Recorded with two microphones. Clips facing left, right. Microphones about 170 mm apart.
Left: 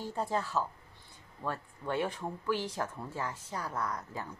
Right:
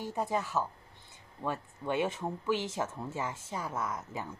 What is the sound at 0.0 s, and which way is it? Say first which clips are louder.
Speech: right 1 dB; 15° right (ahead or behind).